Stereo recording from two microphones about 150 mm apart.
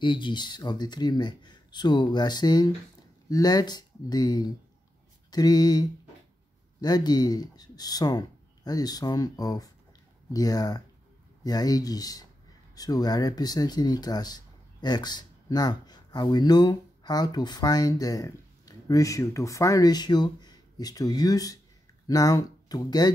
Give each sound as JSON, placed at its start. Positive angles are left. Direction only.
{"t": 0.0, "sound": "speech", "side_deg": 30}